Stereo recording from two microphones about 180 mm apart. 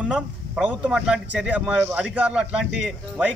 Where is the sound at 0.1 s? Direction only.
5° right (ahead or behind).